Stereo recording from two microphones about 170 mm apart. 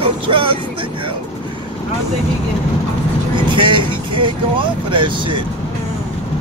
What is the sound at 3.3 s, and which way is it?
Speech, 30° right (ahead or behind).